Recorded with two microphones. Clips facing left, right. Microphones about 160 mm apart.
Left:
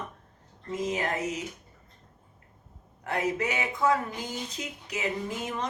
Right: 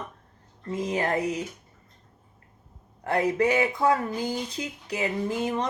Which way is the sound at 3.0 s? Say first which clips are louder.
Right 6 dB; 35° right (ahead or behind).